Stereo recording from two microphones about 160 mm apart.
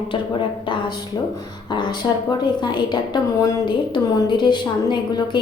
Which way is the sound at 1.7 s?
30° left (ahead or behind).